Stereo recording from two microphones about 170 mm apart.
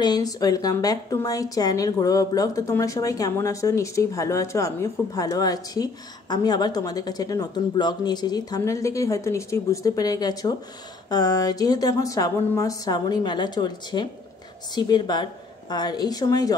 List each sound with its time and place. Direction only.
0.0 s speech: 20° left (ahead or behind)